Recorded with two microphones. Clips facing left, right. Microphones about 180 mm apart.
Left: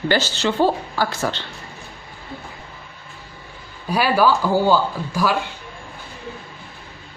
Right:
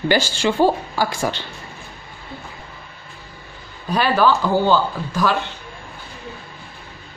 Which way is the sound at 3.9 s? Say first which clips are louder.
Even; 10° left (ahead or behind).